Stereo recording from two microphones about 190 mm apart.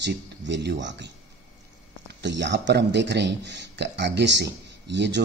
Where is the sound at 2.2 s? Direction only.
65° right (ahead or behind).